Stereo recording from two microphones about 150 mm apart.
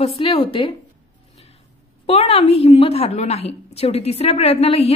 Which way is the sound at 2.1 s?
40° left (ahead or behind).